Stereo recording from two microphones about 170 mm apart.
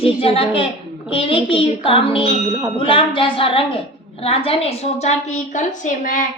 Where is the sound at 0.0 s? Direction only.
35° left (ahead or behind).